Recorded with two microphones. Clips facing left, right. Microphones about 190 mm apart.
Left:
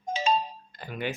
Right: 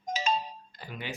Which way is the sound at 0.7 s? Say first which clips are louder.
Left 10 dB; 50° left (ahead or behind).